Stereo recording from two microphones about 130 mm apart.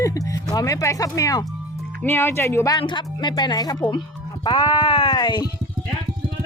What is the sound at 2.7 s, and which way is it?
Speech, 35° left (ahead or behind).